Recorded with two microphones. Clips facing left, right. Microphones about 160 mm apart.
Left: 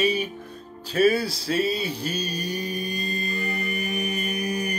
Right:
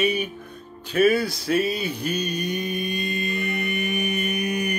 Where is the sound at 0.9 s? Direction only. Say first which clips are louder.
Right 1 dB; 30° left (ahead or behind).